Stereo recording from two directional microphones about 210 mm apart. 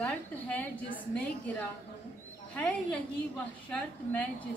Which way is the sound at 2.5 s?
5° left (ahead or behind).